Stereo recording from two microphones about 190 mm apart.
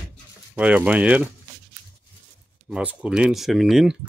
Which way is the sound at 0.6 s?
5° right (ahead or behind).